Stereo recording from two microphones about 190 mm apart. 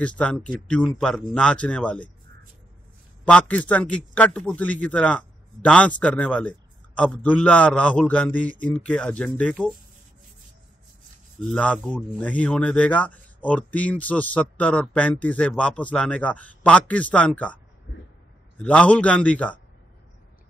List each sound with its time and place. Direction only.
0.0 s speech: 5° left (ahead or behind)
3.3 s speech: 5° left (ahead or behind)
11.3 s speech: 5° left (ahead or behind)
17.9 s speech: 50° left (ahead or behind)
18.6 s speech: 5° left (ahead or behind)